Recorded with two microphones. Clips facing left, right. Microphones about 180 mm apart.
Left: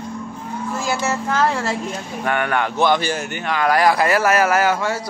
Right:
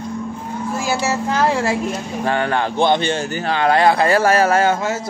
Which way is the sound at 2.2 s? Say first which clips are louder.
Right 1 dB; 30° right (ahead or behind).